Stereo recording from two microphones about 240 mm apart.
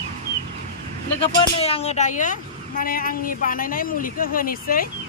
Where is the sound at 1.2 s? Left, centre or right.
Left.